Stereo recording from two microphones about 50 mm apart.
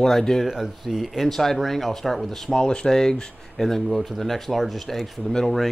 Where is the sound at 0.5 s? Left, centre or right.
Centre.